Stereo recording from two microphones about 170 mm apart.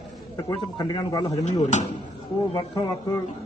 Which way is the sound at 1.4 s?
45° left (ahead or behind).